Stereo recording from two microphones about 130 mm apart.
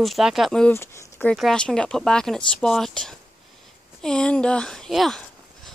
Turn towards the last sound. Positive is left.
turn(degrees=5)  # may be behind; listen again after turning